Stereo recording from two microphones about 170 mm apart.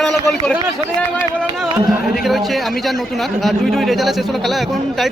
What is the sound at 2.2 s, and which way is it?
A man's voice, centre (ahead or behind).